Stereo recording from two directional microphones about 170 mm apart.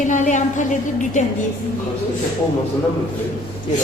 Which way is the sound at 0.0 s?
45° left (ahead or behind).